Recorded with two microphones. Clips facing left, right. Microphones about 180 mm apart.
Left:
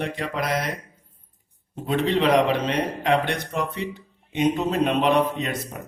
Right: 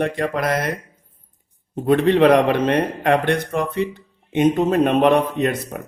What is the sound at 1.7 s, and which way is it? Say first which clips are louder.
Speech: right 7 dB; 55° right (ahead or behind).